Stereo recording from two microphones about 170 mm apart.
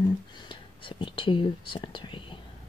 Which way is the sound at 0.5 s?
30° left (ahead or behind).